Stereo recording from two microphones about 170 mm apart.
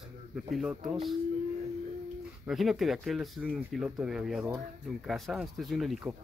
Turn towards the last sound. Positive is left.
turn(degrees=0)  # may be behind; listen again after turning